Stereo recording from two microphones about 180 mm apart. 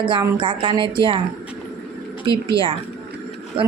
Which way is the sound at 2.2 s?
30° right (ahead or behind).